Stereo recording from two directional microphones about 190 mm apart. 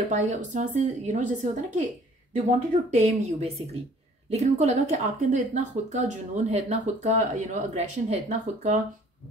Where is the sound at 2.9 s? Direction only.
35° right (ahead or behind).